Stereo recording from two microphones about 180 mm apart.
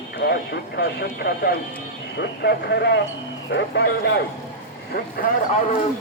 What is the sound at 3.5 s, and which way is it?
Speech, 80° left.